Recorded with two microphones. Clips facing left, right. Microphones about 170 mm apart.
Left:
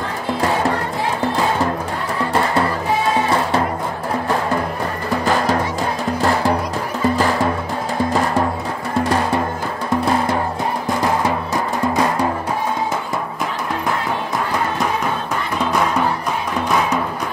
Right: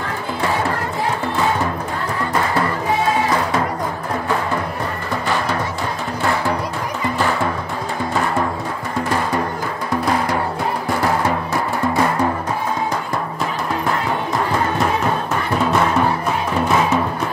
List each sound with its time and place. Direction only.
11.2 s music: 15° left (ahead or behind)